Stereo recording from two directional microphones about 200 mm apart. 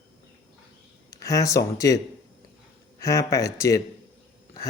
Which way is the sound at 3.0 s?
15° left (ahead or behind).